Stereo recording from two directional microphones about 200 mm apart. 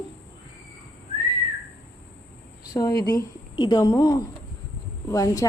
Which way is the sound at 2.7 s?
20° left (ahead or behind).